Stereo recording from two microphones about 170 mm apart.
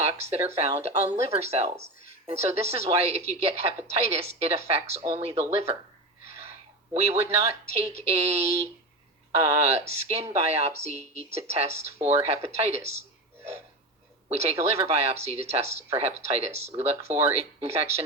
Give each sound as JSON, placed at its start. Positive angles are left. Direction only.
{"t": 0.0, "sound": "a woman's voice", "side_deg": -40}
{"t": 6.9, "sound": "a woman's voice", "side_deg": -40}
{"t": 14.3, "sound": "a woman's voice", "side_deg": -40}